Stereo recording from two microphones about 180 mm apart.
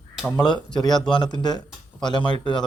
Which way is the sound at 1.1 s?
25° left (ahead or behind).